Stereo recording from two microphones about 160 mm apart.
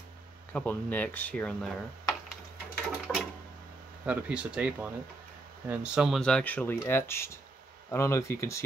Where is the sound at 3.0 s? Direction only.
Centre (ahead or behind).